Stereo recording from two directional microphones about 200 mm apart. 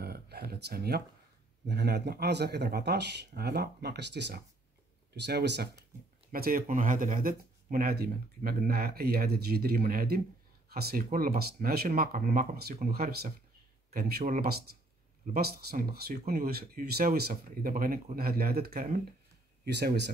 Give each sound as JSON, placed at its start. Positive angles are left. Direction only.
{"t": 0.0, "sound": "a sound", "side_deg": -50}
{"t": 1.7, "sound": "speech", "side_deg": -55}
{"t": 6.3, "sound": "speech", "side_deg": -45}